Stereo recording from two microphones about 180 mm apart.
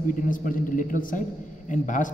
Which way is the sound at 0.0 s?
45° left (ahead or behind).